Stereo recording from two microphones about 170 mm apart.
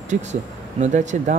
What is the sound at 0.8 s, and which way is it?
Speech, 45° right (ahead or behind).